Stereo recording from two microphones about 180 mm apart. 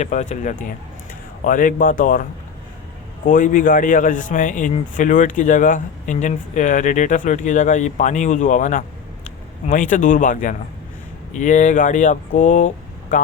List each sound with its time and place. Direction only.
0.0 s speech: 40° left (ahead or behind)
3.2 s speech: 45° left (ahead or behind)